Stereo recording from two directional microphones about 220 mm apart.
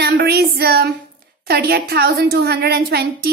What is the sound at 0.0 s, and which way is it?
Child singing, 45° right (ahead or behind).